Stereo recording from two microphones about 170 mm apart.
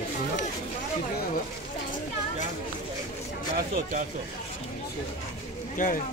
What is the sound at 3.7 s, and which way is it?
Speech, 50° right (ahead or behind).